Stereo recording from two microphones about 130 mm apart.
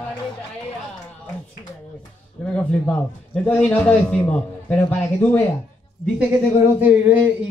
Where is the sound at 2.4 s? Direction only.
10° left (ahead or behind).